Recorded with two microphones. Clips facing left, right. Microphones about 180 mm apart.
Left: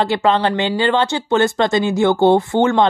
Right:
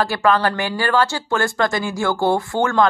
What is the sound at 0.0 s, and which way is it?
Speech, 20° left (ahead or behind).